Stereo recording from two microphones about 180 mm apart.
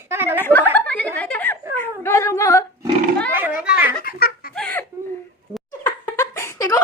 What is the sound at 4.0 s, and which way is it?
Giggle, 55° left (ahead or behind).